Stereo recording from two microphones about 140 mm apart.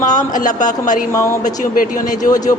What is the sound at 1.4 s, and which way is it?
Speech, 65° left (ahead or behind).